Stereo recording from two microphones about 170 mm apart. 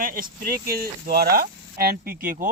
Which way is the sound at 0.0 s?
55° right (ahead or behind).